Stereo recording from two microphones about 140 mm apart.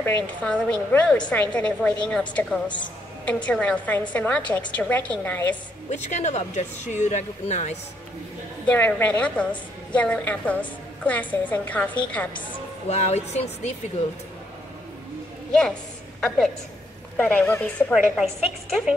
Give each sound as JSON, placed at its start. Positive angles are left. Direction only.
{"t": 0.0, "sound": "a woman's voice", "side_deg": 10}
{"t": 5.9, "sound": "speech", "side_deg": 60}
{"t": 8.6, "sound": "a woman's voice", "side_deg": 15}
{"t": 12.8, "sound": "speech", "side_deg": 50}
{"t": 15.5, "sound": "a woman's voice", "side_deg": 5}
{"t": 17.9, "sound": "a woman's voice", "side_deg": 0}